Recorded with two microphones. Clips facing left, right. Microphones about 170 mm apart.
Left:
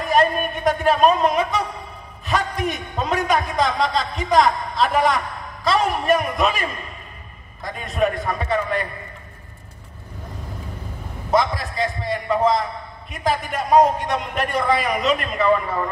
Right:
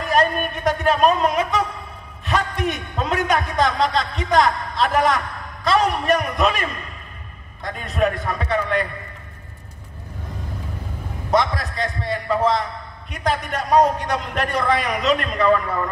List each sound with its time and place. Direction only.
0.0 s a sound: centre (ahead or behind)
2.2 s a man's voice: centre (ahead or behind)
11.2 s a man's voice: centre (ahead or behind)